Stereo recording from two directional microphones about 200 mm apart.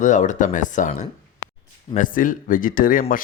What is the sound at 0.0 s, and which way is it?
Speech, 40° left (ahead or behind).